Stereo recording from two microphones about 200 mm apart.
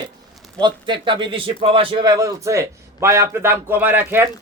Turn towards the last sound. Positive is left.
turn(degrees=-10)  # may be behind; listen again after turning